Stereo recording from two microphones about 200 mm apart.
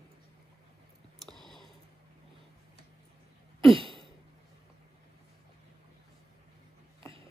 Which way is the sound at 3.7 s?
25° right (ahead or behind).